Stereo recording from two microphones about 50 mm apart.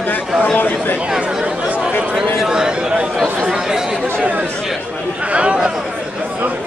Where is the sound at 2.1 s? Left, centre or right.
Centre.